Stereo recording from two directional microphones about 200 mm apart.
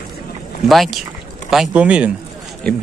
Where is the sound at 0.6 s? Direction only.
Centre (ahead or behind).